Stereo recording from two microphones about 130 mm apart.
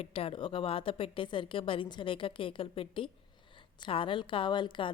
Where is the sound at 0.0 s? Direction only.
50° left (ahead or behind).